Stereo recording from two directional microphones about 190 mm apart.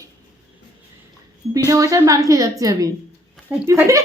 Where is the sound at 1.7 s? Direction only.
15° right (ahead or behind).